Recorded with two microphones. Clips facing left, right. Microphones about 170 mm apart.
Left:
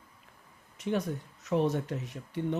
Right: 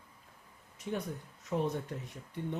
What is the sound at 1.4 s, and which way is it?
Speech, 80° left.